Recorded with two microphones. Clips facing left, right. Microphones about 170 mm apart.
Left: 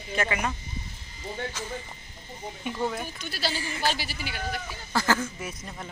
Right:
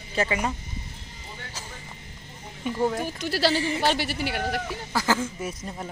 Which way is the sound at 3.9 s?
65° right (ahead or behind).